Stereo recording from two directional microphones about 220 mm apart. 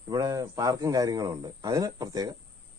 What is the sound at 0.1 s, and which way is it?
Speech, 15° right (ahead or behind).